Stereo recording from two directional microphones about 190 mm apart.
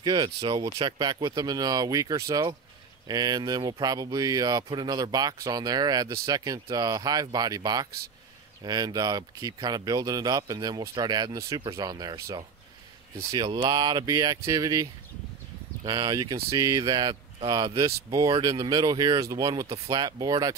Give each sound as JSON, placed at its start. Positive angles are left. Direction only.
{"t": 0.0, "sound": "speech", "side_deg": -25}